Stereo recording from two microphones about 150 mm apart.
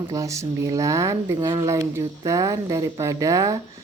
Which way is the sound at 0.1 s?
20° right (ahead or behind).